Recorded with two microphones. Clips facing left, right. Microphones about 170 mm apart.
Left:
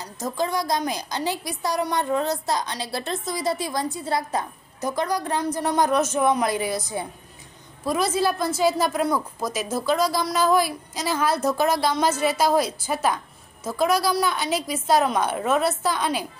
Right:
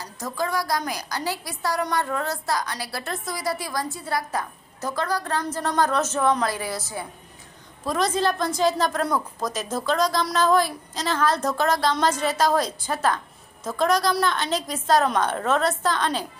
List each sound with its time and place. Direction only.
0.0 s a woman's voice: 20° left (ahead or behind)
7.8 s a woman's voice: 10° left (ahead or behind)